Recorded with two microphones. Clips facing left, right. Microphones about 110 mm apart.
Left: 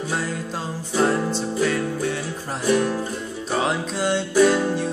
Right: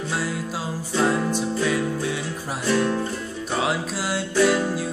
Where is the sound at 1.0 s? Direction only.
10° right (ahead or behind).